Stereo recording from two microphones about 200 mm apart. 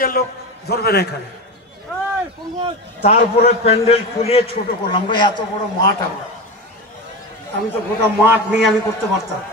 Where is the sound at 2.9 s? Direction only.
35° left (ahead or behind).